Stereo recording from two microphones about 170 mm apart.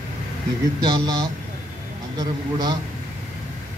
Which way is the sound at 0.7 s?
25° right (ahead or behind).